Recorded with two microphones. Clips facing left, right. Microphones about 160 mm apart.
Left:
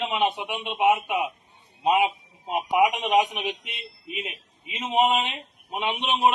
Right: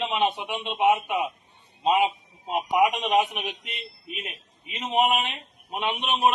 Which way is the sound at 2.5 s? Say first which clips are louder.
Even; 5° left (ahead or behind).